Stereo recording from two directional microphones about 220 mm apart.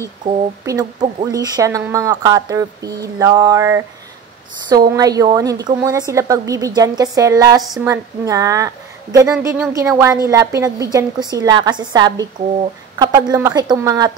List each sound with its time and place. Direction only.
0.0 s a woman's voice: 15° right (ahead or behind)
4.9 s a woman's voice: 15° right (ahead or behind)